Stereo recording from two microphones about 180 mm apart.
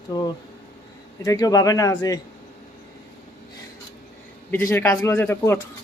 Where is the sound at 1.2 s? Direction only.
20° left (ahead or behind).